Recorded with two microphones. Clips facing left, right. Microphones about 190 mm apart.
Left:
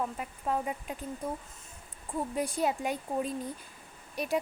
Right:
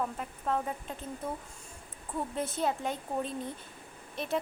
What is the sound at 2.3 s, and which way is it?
Speech, 15° left (ahead or behind).